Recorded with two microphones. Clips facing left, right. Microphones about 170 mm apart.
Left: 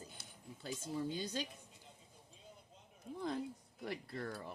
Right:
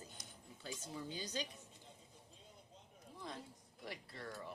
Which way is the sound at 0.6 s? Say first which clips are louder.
Left 7 dB; 50° left (ahead or behind).